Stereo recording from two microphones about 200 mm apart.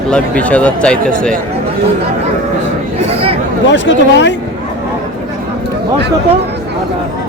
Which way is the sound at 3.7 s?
65° left (ahead or behind).